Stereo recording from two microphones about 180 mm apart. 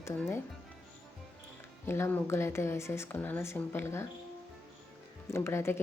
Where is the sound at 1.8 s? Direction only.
15° left (ahead or behind).